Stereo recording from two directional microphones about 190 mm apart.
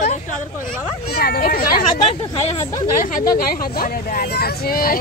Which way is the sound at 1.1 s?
50° left (ahead or behind).